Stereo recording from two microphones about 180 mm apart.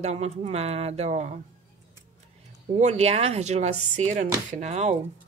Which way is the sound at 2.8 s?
40° right (ahead or behind).